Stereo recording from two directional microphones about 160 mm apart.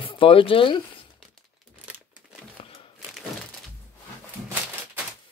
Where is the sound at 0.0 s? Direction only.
35° left (ahead or behind).